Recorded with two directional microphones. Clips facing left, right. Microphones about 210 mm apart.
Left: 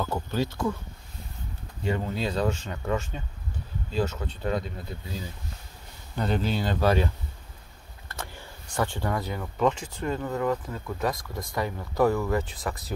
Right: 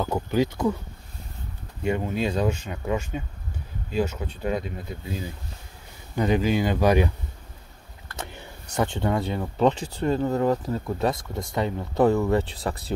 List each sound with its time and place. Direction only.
0.0 s speech: 15° right (ahead or behind)
1.8 s speech: 15° right (ahead or behind)
6.1 s speech: 15° right (ahead or behind)
8.2 s vehicle: 20° right (ahead or behind)
8.7 s speech: 25° right (ahead or behind)